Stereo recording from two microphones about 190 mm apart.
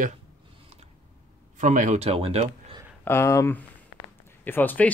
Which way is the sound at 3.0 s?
15° left (ahead or behind).